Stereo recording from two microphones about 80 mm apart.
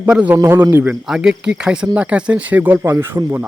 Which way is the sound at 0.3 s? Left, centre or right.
Right.